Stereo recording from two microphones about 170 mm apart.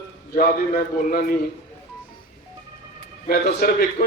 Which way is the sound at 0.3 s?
55° left (ahead or behind).